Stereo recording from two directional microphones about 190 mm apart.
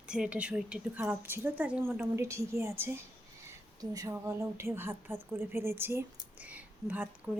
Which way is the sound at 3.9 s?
15° right (ahead or behind).